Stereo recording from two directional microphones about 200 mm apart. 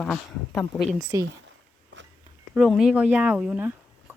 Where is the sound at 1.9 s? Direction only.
65° right (ahead or behind).